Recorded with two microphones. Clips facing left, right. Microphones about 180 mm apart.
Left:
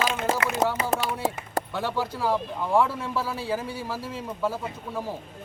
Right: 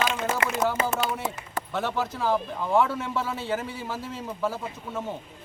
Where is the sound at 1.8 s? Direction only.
Centre (ahead or behind).